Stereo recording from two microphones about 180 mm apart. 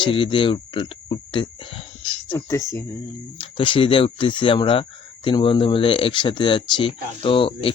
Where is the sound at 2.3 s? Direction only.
15° left (ahead or behind).